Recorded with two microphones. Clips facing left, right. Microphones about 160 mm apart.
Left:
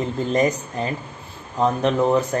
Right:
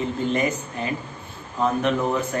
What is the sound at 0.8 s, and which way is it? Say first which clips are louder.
Speech: left 2 dB; 35° left (ahead or behind).